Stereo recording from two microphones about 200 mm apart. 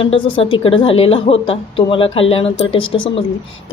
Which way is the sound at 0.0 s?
25° left (ahead or behind).